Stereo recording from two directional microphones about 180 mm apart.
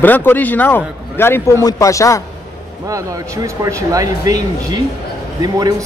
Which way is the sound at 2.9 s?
20° right (ahead or behind).